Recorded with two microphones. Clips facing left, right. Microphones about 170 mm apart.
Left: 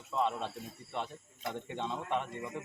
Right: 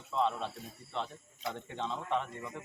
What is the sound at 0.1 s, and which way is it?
Snake, 15° left (ahead or behind).